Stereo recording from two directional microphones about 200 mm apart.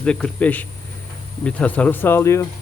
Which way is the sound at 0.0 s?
5° left (ahead or behind).